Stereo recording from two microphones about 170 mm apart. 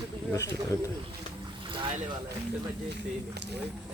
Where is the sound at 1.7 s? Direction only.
30° right (ahead or behind).